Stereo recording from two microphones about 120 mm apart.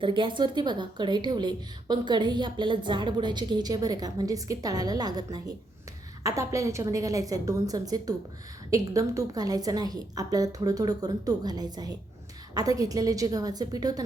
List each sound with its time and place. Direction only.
0.0 s a woman's voice: 45° right (ahead or behind)